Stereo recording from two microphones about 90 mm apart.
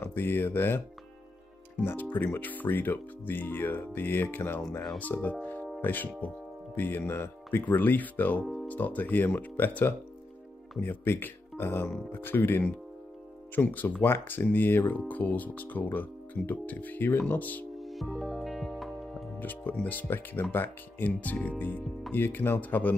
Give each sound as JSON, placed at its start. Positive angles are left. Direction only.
{"t": 0.0, "sound": "speech", "side_deg": 25}
{"t": 1.9, "sound": "speech", "side_deg": 20}
{"t": 5.4, "sound": "music", "side_deg": 20}
{"t": 5.8, "sound": "speech", "side_deg": 20}
{"t": 17.7, "sound": "music", "side_deg": 0}
{"t": 19.4, "sound": "speech", "side_deg": 20}